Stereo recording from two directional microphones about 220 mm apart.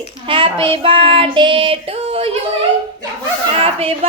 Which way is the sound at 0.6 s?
25° right (ahead or behind).